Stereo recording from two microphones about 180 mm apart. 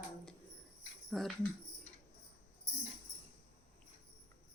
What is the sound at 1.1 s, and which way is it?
Speech, centre (ahead or behind).